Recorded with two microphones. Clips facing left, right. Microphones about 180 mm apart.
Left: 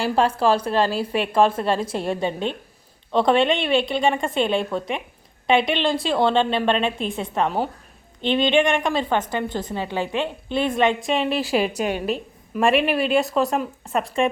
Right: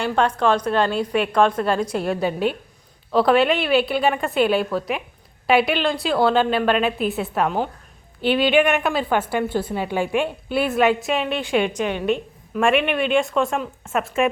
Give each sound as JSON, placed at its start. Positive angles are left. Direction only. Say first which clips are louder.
{"t": 0.4, "sound": "a woman's voice", "louder": "even", "side_deg": 5}
{"t": 11.8, "sound": "a woman's voice", "louder": "right 2 dB", "side_deg": 40}
{"t": 12.1, "sound": "a woman's voice", "louder": "right 3 dB", "side_deg": 0}
{"t": 13.1, "sound": "a woman's voice", "louder": "even", "side_deg": 40}
{"t": 13.3, "sound": "a woman's voice", "louder": "even", "side_deg": 0}